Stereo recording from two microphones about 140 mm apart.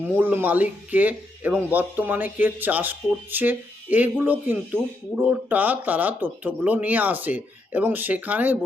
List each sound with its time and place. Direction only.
0.2 s speech: 15° right (ahead or behind)